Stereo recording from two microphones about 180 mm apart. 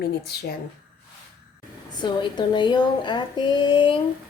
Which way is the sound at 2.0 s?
25° left (ahead or behind).